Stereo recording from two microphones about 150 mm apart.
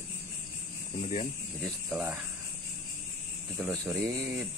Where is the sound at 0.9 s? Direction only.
55° left (ahead or behind).